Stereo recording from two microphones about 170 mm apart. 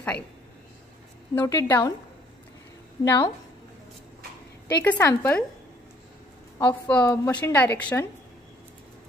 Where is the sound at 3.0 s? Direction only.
20° left (ahead or behind).